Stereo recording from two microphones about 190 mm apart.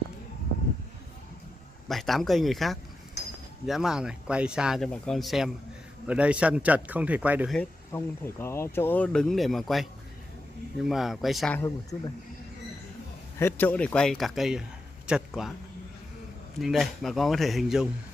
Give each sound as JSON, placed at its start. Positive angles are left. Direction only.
{"t": 1.9, "sound": "speech", "side_deg": 0}
{"t": 7.5, "sound": "speech", "side_deg": 10}
{"t": 11.6, "sound": "speech", "side_deg": 20}
{"t": 13.4, "sound": "speech", "side_deg": 10}
{"t": 16.5, "sound": "speech", "side_deg": 0}